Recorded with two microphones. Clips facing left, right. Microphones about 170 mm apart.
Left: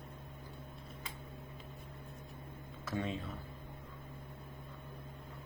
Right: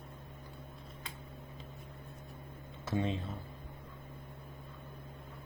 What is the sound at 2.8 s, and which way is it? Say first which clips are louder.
Speech: right 4 dB; 25° right (ahead or behind).